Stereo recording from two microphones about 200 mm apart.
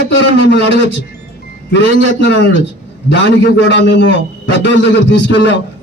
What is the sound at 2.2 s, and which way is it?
A man's voice, 60° left (ahead or behind).